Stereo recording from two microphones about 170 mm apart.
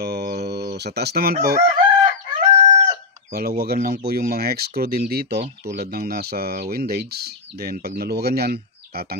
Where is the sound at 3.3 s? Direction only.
65° right (ahead or behind).